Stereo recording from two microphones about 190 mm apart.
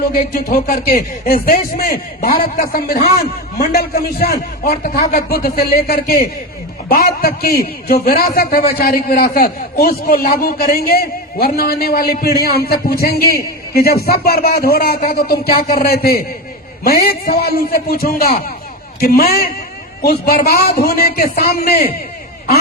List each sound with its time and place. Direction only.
0.0 s a man's voice: 50° left (ahead or behind)